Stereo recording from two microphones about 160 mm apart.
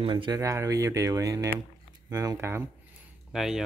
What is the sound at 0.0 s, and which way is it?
Speech, 30° right (ahead or behind).